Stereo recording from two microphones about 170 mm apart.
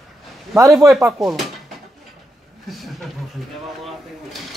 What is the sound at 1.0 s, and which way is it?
Speech, 20° right (ahead or behind).